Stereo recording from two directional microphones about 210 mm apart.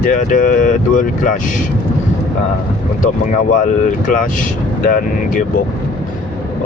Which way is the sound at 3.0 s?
35° left (ahead or behind).